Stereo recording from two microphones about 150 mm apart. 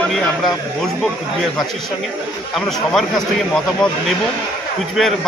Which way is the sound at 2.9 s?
5° left (ahead or behind).